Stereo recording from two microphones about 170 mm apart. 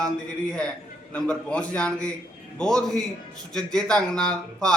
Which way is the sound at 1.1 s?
5° left (ahead or behind).